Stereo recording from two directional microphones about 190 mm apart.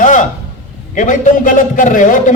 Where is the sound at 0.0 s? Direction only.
40° left (ahead or behind).